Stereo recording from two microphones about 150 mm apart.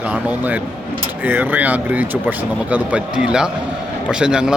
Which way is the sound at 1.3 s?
10° right (ahead or behind).